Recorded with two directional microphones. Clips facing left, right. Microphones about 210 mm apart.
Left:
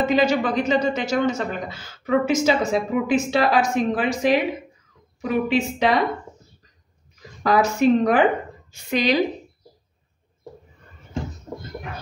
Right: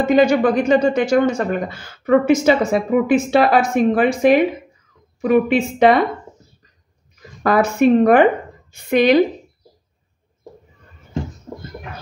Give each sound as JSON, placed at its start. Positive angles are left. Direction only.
{"t": 0.0, "sound": "speech", "side_deg": -55}
{"t": 7.4, "sound": "speech", "side_deg": -55}